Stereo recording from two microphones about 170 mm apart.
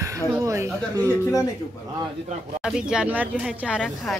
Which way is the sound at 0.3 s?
15° right (ahead or behind).